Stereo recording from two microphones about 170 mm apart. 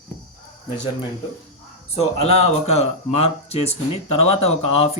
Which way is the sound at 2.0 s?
40° left (ahead or behind).